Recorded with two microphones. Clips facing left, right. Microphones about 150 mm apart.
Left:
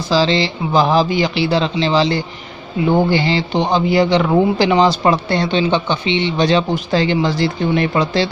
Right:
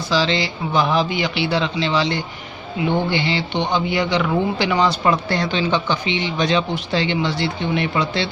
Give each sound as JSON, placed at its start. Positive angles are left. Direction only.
{"t": 0.1, "sound": "a man's voice", "side_deg": 35}